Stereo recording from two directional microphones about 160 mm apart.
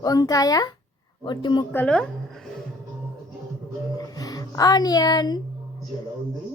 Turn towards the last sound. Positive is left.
turn(degrees=25)  # may be behind; listen again after turning